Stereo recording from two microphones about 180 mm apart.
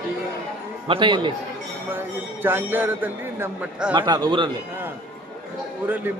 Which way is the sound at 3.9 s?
25° right (ahead or behind).